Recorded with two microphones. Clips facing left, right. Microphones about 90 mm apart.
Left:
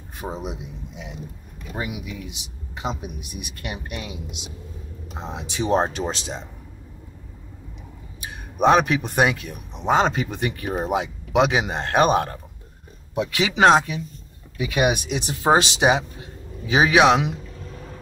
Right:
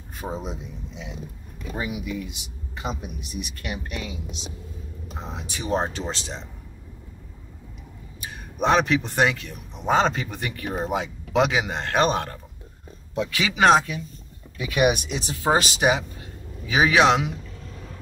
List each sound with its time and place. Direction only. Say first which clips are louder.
0.4 s speech: left 2 dB; 10° left (ahead or behind)
2.0 s speech: right 3 dB; 15° left (ahead or behind)
5.2 s speech: left 6 dB; 20° left (ahead or behind)
8.5 s speech: left 3 dB; 15° left (ahead or behind)